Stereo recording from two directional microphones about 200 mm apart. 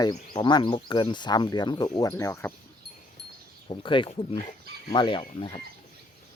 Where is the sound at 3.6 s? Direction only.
25° left (ahead or behind).